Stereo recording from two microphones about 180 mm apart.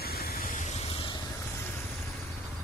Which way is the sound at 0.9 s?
30° left (ahead or behind).